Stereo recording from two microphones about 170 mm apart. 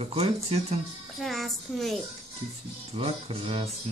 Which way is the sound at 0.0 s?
35° right (ahead or behind).